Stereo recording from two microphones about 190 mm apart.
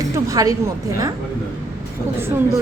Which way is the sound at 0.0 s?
20° right (ahead or behind).